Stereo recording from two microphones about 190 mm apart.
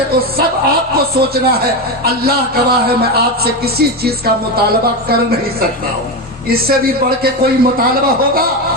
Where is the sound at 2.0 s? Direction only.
55° right (ahead or behind).